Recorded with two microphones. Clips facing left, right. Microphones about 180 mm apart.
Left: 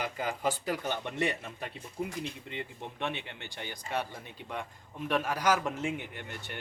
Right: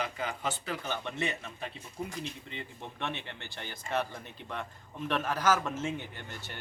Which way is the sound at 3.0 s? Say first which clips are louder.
Left 2 dB; 15° left (ahead or behind).